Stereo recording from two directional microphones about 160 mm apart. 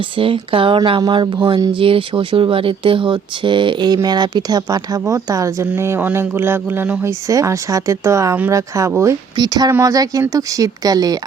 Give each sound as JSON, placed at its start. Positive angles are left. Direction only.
{"t": 0.2, "sound": "speech", "side_deg": -35}